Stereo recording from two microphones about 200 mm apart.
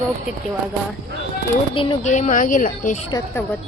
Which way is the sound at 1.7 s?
25° left (ahead or behind).